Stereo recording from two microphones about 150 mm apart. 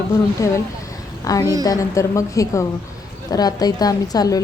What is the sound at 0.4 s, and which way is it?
A woman's voice, 20° left (ahead or behind).